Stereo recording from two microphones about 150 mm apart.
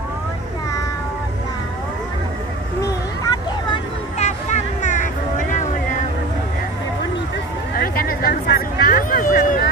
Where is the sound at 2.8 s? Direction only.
30° left (ahead or behind).